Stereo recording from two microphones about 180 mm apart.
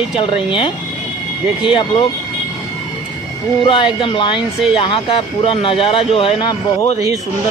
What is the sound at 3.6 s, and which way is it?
Speech, 30° left (ahead or behind).